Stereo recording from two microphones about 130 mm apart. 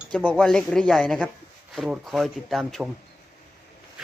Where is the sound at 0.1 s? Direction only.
10° left (ahead or behind).